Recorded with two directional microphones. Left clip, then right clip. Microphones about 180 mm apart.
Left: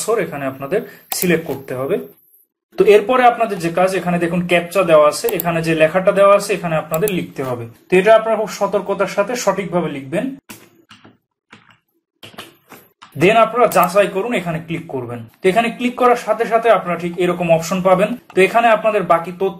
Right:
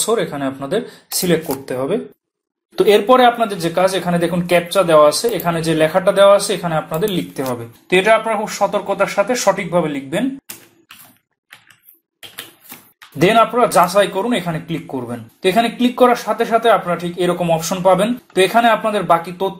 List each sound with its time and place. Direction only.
0.0 s speech: 25° right (ahead or behind)
13.2 s speech: 30° right (ahead or behind)